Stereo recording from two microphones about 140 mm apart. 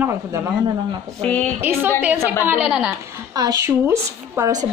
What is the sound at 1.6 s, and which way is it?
A woman's voice, 15° right (ahead or behind).